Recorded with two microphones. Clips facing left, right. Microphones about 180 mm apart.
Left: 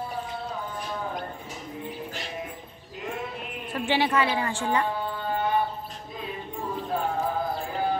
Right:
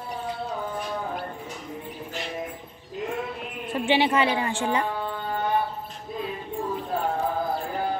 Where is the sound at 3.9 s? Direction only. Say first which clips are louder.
Right 2 dB; 20° right (ahead or behind).